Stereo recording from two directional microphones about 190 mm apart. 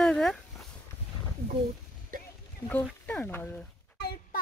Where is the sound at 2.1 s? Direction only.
45° right (ahead or behind).